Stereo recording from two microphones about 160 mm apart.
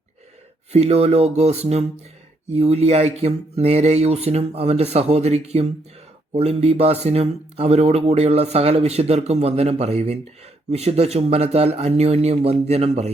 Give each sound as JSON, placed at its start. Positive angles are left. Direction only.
{"t": 0.7, "sound": "speech", "side_deg": -40}